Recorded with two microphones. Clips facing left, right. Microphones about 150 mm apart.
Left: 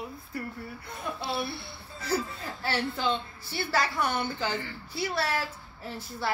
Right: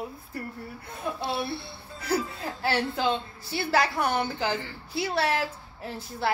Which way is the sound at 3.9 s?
60° right (ahead or behind).